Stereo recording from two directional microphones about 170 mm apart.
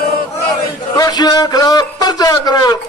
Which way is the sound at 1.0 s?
25° left (ahead or behind).